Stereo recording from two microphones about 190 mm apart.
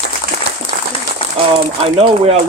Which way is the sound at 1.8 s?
30° right (ahead or behind).